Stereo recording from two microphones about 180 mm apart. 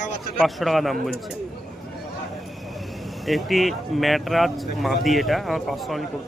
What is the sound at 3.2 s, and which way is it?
Speech, centre (ahead or behind).